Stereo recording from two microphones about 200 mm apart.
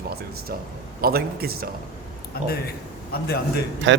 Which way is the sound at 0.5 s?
50° right (ahead or behind).